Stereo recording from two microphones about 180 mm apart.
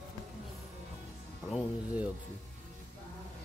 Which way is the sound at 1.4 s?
5° right (ahead or behind).